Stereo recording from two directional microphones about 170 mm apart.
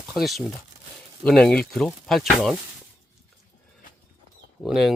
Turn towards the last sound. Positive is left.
turn(degrees=0)  # may be behind; listen again after turning